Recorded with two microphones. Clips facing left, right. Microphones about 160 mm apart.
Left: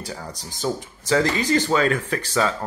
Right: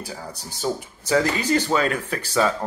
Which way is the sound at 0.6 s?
10° right (ahead or behind).